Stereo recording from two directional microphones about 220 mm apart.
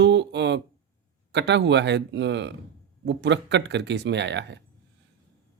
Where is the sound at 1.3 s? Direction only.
55° right (ahead or behind).